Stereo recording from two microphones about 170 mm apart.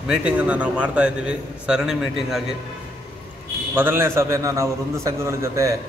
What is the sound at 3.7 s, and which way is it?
A man's voice, 15° right (ahead or behind).